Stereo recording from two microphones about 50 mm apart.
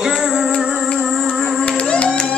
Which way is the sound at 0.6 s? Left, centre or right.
Centre.